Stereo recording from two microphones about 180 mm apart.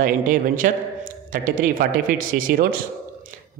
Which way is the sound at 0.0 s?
50° right (ahead or behind).